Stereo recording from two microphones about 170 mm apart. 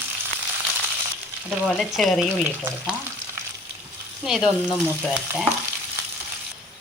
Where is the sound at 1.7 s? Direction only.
Centre (ahead or behind).